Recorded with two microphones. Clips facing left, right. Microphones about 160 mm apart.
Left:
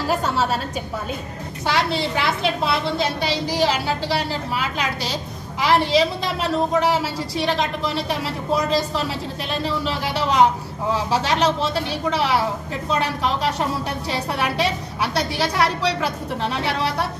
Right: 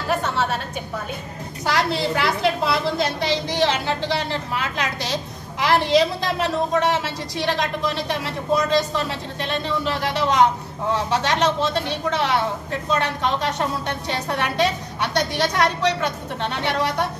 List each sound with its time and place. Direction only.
0.2 s a woman's voice: 35° left (ahead or behind)
1.7 s a woman's voice: centre (ahead or behind)